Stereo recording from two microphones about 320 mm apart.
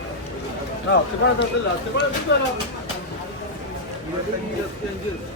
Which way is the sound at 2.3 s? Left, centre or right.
Left.